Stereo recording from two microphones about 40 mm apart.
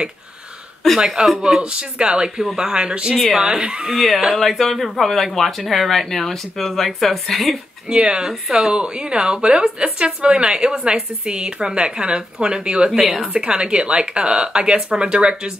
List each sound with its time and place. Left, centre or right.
0.9 s a woman's voice: centre
3.9 s speech: centre
7.9 s a woman's voice: right
8.3 s a woman's voice: centre